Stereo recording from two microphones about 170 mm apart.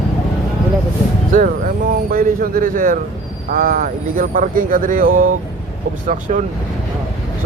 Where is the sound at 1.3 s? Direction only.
55° right (ahead or behind).